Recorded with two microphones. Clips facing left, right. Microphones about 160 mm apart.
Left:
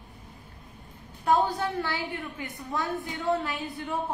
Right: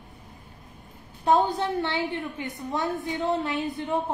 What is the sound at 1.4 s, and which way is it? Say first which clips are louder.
A woman's voice: right 3 dB; 20° right (ahead or behind).